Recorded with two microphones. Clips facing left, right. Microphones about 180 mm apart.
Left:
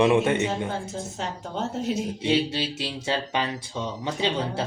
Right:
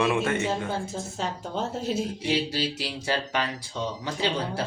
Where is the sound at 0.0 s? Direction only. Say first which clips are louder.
Left 4 dB; 20° left (ahead or behind).